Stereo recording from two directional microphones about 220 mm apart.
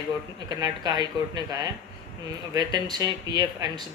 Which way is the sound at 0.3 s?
15° right (ahead or behind).